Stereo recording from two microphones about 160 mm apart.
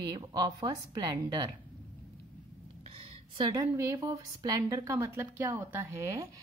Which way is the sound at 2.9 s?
25° right (ahead or behind).